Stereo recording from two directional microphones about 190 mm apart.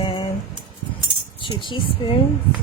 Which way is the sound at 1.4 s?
25° left (ahead or behind).